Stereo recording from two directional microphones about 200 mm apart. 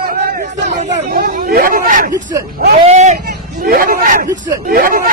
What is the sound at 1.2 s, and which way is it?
Hubbub, 50° right (ahead or behind).